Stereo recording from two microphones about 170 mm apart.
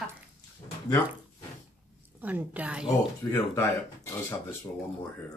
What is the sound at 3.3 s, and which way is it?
Speech, 15° left (ahead or behind).